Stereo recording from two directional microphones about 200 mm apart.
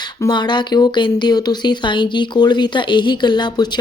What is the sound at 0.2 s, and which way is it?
Speech, 20° left (ahead or behind).